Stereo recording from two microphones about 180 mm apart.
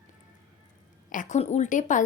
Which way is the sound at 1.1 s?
45° left (ahead or behind).